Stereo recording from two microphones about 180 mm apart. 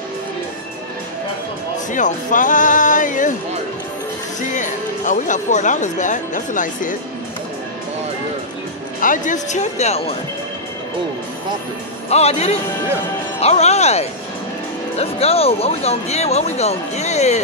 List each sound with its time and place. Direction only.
1.9 s speech: 45° left (ahead or behind)
4.6 s speech: 45° left (ahead or behind)
9.0 s speech: 45° left (ahead or behind)
12.1 s speech: 35° left (ahead or behind)